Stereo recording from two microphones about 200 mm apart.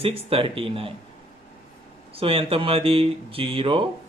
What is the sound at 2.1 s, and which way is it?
Speech, 30° right (ahead or behind).